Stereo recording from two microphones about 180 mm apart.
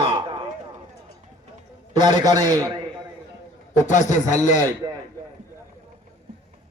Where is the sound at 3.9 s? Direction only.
45° left (ahead or behind).